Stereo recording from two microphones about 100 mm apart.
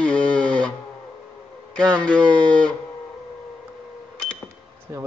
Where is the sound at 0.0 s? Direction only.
10° left (ahead or behind).